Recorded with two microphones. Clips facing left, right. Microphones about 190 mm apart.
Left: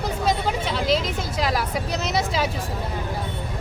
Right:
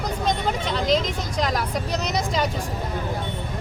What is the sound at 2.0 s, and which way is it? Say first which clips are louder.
Vehicle: left 1 dB; 5° left (ahead or behind).